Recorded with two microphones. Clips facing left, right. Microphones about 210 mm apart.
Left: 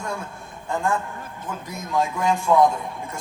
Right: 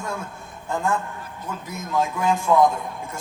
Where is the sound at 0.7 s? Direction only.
Centre (ahead or behind).